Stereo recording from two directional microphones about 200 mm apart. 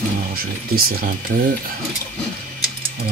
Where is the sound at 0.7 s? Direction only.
50° right (ahead or behind).